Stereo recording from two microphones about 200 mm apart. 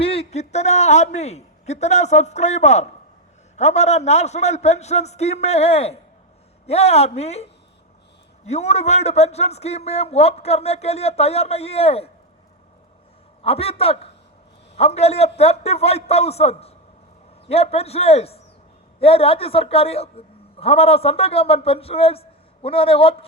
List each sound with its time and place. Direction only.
0.0 s a man's voice: 30° left (ahead or behind)
8.4 s a man's voice: 35° left (ahead or behind)
13.4 s a man's voice: 30° left (ahead or behind)